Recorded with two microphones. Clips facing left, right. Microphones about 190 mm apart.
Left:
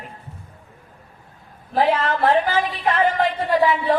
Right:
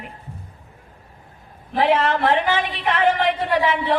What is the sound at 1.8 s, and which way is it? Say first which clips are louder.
Speech: right 1 dB; 75° right (ahead or behind).